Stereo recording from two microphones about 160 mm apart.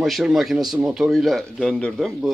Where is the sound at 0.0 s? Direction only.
Centre (ahead or behind).